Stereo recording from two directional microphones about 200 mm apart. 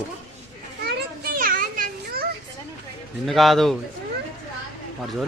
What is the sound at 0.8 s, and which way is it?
Children playing, 50° right (ahead or behind).